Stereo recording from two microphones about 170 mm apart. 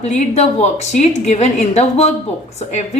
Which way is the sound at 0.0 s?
40° left (ahead or behind).